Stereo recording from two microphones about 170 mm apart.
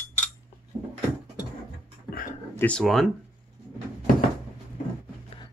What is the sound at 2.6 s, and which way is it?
Speech, 5° left (ahead or behind).